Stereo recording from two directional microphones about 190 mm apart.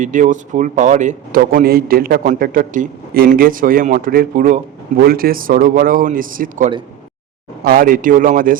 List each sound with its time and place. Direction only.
0.0 s a man's voice: 40° right (ahead or behind)